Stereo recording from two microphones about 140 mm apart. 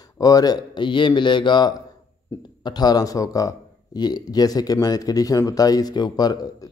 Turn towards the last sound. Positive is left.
turn(degrees=30)  # may be behind; listen again after turning